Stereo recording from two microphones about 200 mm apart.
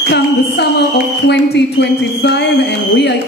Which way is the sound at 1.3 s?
60° left (ahead or behind).